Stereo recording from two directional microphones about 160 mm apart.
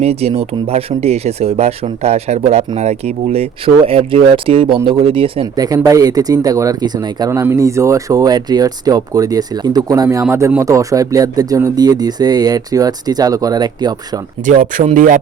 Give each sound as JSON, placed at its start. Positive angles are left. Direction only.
{"t": 0.0, "sound": "speech", "side_deg": -40}
{"t": 5.5, "sound": "speech", "side_deg": -25}
{"t": 14.4, "sound": "speech", "side_deg": -55}